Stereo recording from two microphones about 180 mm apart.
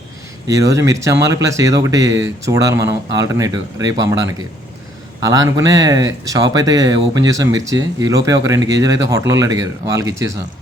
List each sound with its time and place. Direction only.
0.4 s speech: 20° right (ahead or behind)